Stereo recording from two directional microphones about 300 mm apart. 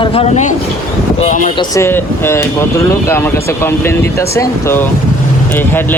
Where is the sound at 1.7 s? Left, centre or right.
Centre.